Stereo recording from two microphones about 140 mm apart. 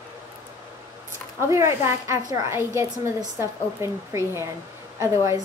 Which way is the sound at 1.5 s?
20° right (ahead or behind).